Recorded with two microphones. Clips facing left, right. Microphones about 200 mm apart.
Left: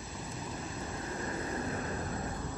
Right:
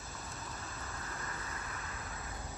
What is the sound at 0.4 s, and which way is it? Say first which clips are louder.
Vehicle: left 9 dB; 20° left (ahead or behind).